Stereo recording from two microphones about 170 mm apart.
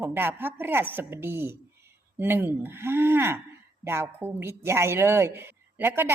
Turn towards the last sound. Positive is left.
turn(degrees=-10)  # may be behind; listen again after turning